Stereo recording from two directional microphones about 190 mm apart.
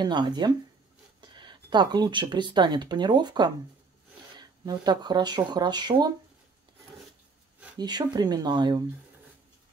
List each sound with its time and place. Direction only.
0.0 s speech: 20° right (ahead or behind)
7.7 s speech: 20° right (ahead or behind)